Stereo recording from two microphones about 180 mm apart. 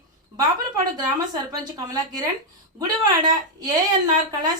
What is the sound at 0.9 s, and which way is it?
A woman's voice, 20° right (ahead or behind).